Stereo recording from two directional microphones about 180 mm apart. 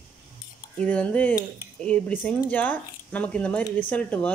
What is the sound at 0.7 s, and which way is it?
Speech, 5° left (ahead or behind).